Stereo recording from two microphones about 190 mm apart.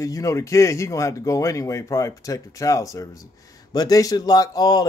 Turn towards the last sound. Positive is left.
turn(degrees=20)  # may be behind; listen again after turning